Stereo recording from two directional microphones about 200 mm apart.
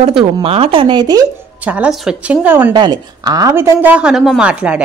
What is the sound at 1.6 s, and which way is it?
Speech, 5° right (ahead or behind).